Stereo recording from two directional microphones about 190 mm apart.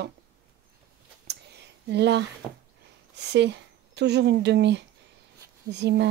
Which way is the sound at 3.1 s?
65° right (ahead or behind).